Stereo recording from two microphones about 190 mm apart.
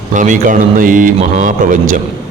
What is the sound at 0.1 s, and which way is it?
A man's voice, 40° right (ahead or behind).